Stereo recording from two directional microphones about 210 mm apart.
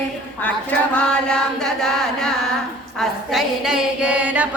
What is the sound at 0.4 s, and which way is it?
Chant, 5° left (ahead or behind).